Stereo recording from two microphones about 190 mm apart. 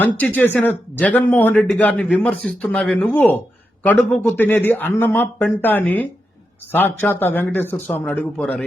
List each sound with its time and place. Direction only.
0.0 s speech: 10° left (ahead or behind)